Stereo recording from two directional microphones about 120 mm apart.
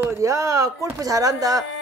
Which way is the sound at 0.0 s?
25° right (ahead or behind).